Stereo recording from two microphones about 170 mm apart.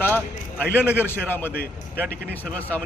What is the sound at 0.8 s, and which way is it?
Speech, 15° left (ahead or behind).